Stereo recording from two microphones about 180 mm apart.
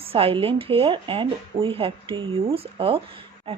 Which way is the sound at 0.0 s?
30° right (ahead or behind).